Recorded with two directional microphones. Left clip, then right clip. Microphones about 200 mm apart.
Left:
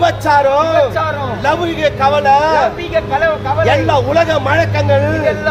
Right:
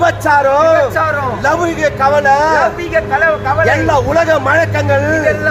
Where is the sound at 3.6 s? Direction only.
5° right (ahead or behind).